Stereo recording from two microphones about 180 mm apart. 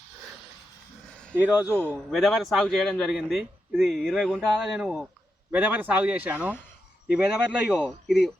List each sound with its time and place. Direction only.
1.4 s a man's voice: 10° right (ahead or behind)